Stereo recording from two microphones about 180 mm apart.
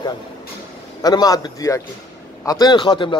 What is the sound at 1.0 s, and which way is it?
A man's voice, 20° left (ahead or behind).